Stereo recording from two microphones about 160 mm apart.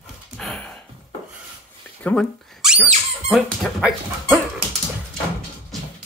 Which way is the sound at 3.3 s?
5° right (ahead or behind).